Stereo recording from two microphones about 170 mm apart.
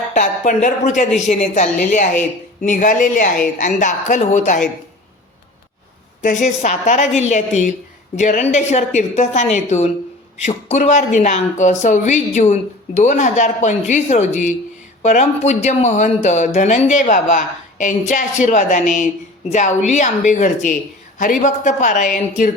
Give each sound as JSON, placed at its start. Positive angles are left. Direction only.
{"t": 0.1, "sound": "a woman's voice", "side_deg": 45}
{"t": 6.2, "sound": "a woman's voice", "side_deg": 45}